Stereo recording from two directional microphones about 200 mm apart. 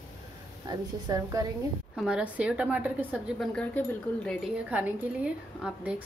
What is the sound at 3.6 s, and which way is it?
A woman's voice, 5° left (ahead or behind).